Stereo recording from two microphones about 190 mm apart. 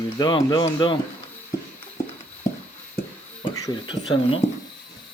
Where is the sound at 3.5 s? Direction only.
25° left (ahead or behind).